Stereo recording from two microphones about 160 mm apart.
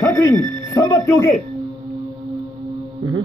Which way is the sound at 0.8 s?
15° left (ahead or behind).